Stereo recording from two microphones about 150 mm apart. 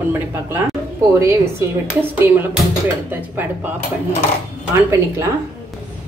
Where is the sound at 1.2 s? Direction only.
15° right (ahead or behind).